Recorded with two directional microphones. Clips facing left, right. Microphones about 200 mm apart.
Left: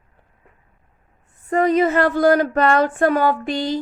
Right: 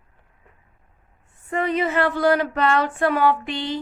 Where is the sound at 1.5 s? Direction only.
40° left (ahead or behind).